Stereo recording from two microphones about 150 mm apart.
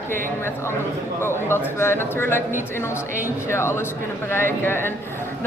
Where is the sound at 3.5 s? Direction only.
15° left (ahead or behind).